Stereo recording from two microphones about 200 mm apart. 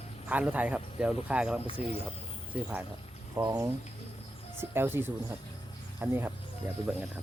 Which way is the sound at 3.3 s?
15° right (ahead or behind).